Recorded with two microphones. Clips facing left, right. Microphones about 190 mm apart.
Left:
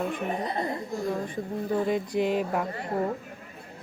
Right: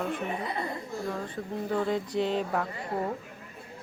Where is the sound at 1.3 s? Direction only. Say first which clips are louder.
Left 2 dB; 15° left (ahead or behind).